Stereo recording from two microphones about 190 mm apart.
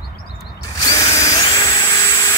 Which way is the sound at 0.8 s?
20° left (ahead or behind).